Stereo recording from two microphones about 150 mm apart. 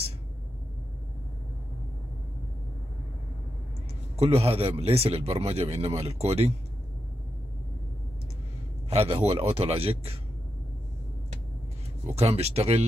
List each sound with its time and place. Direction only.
4.2 s speech: 40° right (ahead or behind)
8.9 s speech: 40° right (ahead or behind)
12.2 s speech: 45° right (ahead or behind)